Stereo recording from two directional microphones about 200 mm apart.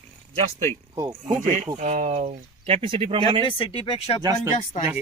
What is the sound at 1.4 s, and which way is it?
Speech, 40° right (ahead or behind).